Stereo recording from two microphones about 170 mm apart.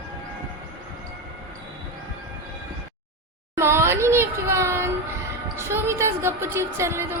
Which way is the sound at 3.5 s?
15° right (ahead or behind).